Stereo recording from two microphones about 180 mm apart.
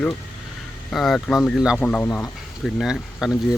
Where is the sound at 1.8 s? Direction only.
10° left (ahead or behind).